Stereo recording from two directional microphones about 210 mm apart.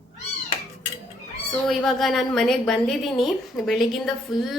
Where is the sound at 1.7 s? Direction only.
Centre (ahead or behind).